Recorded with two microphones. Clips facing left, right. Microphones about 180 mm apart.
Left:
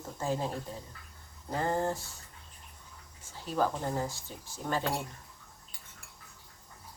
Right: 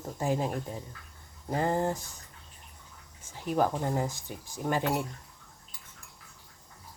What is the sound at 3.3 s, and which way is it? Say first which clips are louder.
Speech: right 3 dB; 15° right (ahead or behind).